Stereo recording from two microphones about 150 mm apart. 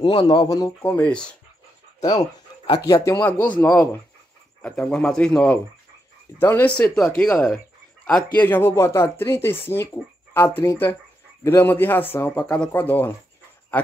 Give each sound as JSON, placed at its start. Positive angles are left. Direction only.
{"t": 0.1, "sound": "speech", "side_deg": 30}
{"t": 0.9, "sound": "speech", "side_deg": 5}
{"t": 2.0, "sound": "speech", "side_deg": 25}
{"t": 2.9, "sound": "speech", "side_deg": 15}
{"t": 8.0, "sound": "a sound", "side_deg": 5}
{"t": 8.4, "sound": "speech", "side_deg": 15}